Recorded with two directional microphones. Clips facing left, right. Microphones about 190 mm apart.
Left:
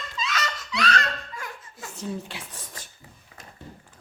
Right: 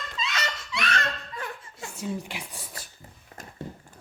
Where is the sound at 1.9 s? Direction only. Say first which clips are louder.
Even; 15° right (ahead or behind).